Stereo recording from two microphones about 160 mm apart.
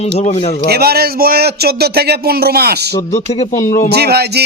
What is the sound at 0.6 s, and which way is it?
Speech, 80° right.